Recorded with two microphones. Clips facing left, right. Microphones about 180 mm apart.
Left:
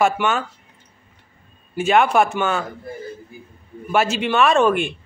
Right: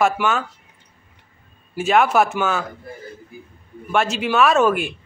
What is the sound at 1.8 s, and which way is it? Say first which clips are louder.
Speech: even; centre (ahead or behind).